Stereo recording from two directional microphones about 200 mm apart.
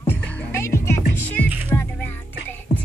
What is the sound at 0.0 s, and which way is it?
Music, 10° left (ahead or behind).